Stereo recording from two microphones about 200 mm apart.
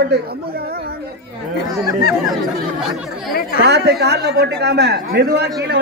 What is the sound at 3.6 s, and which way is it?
Speech, 55° right (ahead or behind).